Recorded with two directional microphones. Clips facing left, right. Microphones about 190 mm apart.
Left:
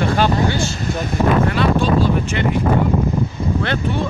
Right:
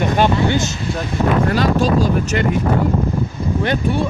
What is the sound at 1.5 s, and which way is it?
Speech, 40° right (ahead or behind).